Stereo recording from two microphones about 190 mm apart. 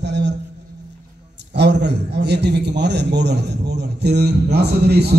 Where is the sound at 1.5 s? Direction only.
65° right (ahead or behind).